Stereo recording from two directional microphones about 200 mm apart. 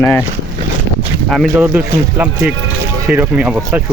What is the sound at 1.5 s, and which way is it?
Speech, 10° right (ahead or behind).